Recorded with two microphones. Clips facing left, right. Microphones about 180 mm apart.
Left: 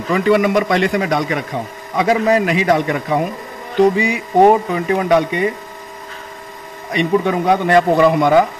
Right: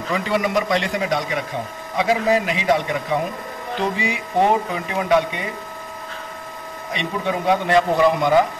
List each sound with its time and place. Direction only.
0.1 s a man's voice: 60° left (ahead or behind)
4.0 s speech: 50° left (ahead or behind)
6.9 s speech: 50° left (ahead or behind)